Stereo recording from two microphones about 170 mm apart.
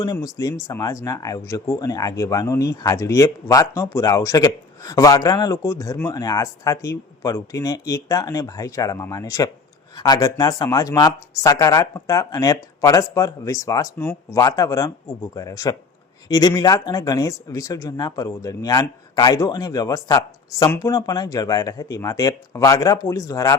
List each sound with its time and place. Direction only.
0.0 s speech: 20° left (ahead or behind)